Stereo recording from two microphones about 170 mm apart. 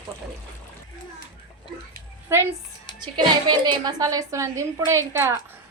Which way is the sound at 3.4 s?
25° right (ahead or behind).